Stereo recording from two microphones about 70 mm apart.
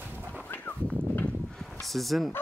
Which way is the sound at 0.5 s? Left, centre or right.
Left.